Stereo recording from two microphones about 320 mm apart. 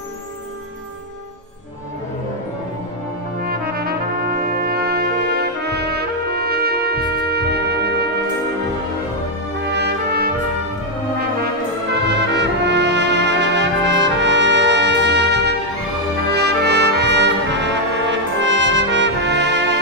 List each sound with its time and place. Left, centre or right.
3.4 s brass instrument: right
9.7 s brass instrument: right
12.1 s music: right
16.3 s brass instrument: right